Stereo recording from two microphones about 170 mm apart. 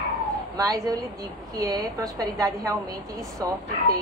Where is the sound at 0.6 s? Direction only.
20° right (ahead or behind).